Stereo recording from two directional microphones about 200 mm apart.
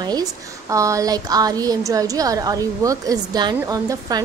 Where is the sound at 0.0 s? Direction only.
20° right (ahead or behind).